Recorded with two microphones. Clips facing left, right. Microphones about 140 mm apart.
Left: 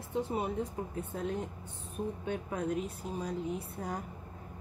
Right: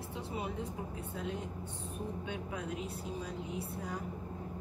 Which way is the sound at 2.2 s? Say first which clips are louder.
Left 5 dB; 45° left (ahead or behind).